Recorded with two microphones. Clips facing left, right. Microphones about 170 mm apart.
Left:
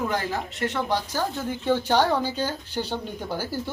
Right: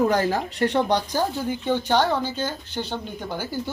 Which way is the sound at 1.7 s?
10° left (ahead or behind).